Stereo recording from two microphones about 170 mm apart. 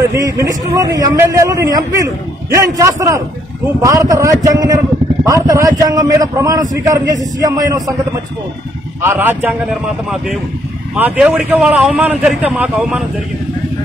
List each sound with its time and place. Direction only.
0.1 s a man's voice: 20° right (ahead or behind)
9.0 s a man's voice: 15° right (ahead or behind)
11.0 s a man's voice: 5° right (ahead or behind)